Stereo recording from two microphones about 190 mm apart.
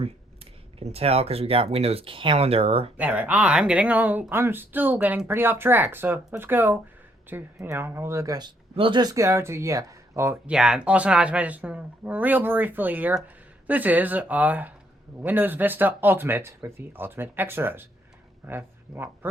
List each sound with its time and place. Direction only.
0.8 s speech: 30° right (ahead or behind)
3.0 s speech: 10° right (ahead or behind)